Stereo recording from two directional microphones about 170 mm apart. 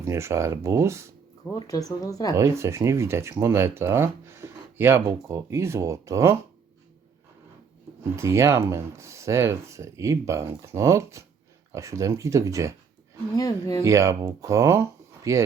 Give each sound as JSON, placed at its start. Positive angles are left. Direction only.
{"t": 0.0, "sound": "speech", "side_deg": -15}
{"t": 1.5, "sound": "speech", "side_deg": 20}
{"t": 2.3, "sound": "speech", "side_deg": -15}
{"t": 8.1, "sound": "speech", "side_deg": -15}
{"t": 13.3, "sound": "speech", "side_deg": 20}
{"t": 13.8, "sound": "speech", "side_deg": -15}